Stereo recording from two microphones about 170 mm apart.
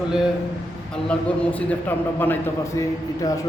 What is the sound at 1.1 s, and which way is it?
A man's voice, 10° left (ahead or behind).